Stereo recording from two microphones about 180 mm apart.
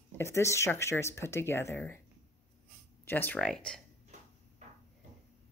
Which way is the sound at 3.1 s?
10° left (ahead or behind).